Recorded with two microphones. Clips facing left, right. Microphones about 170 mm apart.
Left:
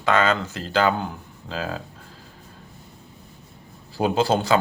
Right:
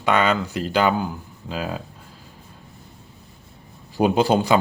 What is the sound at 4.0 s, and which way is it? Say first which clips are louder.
Speech: right 3 dB; 15° right (ahead or behind).